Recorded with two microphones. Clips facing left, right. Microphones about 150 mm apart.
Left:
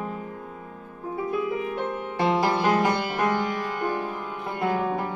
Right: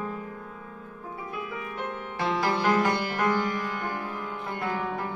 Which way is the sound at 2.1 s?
25° left (ahead or behind).